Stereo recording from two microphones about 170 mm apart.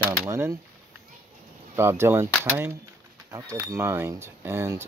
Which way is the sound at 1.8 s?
15° right (ahead or behind).